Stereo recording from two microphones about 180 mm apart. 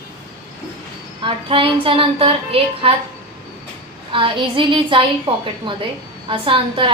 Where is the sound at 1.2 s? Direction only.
30° right (ahead or behind).